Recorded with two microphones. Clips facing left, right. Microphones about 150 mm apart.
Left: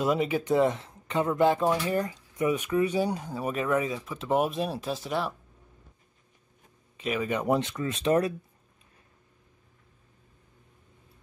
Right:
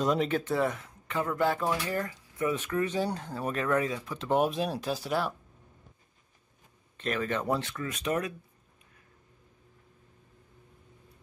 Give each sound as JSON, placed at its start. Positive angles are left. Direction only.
{"t": 0.0, "sound": "speech", "side_deg": 5}
{"t": 0.4, "sound": "speech", "side_deg": 20}
{"t": 7.0, "sound": "speech", "side_deg": 10}